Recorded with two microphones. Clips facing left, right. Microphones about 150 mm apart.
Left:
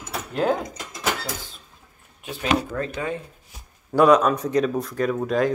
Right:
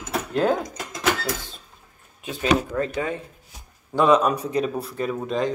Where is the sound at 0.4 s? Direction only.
10° left (ahead or behind).